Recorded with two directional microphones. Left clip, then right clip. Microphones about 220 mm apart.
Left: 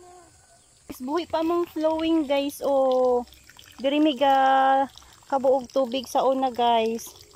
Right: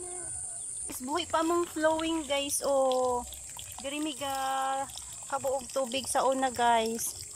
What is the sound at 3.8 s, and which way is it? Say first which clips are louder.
Speech: left 14 dB; 40° left (ahead or behind).